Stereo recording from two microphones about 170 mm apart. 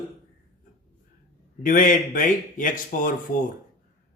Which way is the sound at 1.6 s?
55° left (ahead or behind).